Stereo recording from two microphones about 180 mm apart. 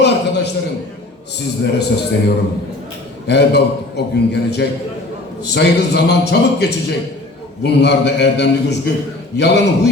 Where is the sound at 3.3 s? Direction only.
65° left (ahead or behind).